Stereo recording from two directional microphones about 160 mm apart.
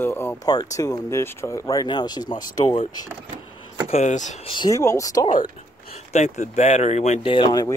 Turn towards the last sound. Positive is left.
turn(degrees=25)  # may be behind; listen again after turning